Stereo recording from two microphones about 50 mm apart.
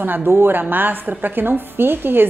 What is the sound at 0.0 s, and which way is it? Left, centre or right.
A woman's voice, right.